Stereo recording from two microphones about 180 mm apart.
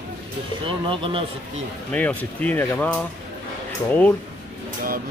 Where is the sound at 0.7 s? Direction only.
30° right (ahead or behind).